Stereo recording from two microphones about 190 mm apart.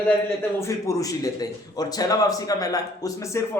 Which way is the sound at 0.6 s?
15° left (ahead or behind).